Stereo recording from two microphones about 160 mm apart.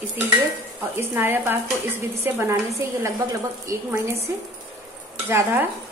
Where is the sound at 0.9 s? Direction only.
15° right (ahead or behind).